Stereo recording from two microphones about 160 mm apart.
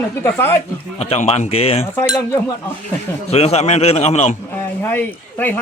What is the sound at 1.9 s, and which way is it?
Cutlery, 20° left (ahead or behind).